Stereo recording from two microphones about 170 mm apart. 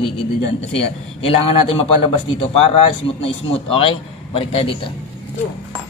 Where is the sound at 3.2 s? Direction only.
30° left (ahead or behind).